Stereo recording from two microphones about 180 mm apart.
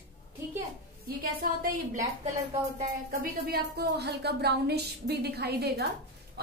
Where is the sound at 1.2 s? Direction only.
55° right (ahead or behind).